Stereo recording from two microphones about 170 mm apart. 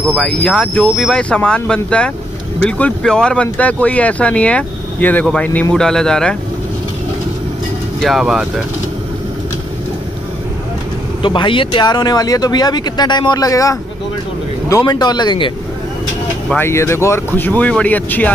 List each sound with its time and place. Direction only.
0.2 s speech: 5° left (ahead or behind)
8.0 s speech: centre (ahead or behind)
11.2 s speech: 30° left (ahead or behind)
16.4 s speech: 15° left (ahead or behind)